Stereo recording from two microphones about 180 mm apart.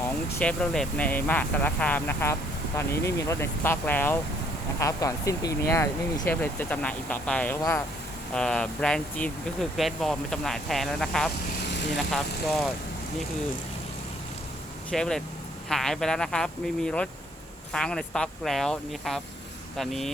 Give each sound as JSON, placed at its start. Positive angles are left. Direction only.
{"t": 0.4, "sound": "speech", "side_deg": 5}
{"t": 8.3, "sound": "speech", "side_deg": 5}
{"t": 14.8, "sound": "speech", "side_deg": 5}